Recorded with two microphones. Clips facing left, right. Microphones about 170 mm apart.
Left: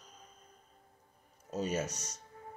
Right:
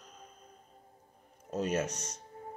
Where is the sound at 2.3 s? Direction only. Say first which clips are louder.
Right 4 dB; 30° right (ahead or behind).